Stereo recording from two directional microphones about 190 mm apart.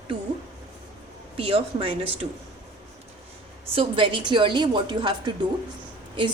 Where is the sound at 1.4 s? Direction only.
30° right (ahead or behind).